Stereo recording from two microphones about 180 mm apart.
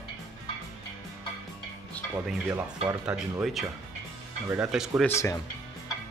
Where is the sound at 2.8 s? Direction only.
5° right (ahead or behind).